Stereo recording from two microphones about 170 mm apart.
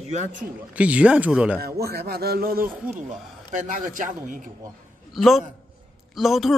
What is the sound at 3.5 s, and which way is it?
Speech, 50° right (ahead or behind).